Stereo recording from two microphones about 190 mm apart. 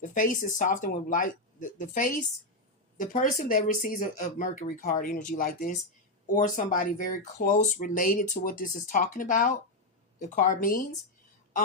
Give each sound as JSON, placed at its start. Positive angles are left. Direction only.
{"t": 0.0, "sound": "speech", "side_deg": 45}